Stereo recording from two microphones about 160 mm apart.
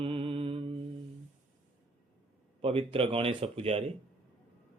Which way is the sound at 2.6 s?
35° right (ahead or behind).